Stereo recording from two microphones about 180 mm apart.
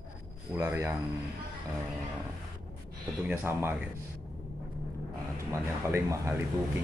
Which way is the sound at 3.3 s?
10° right (ahead or behind).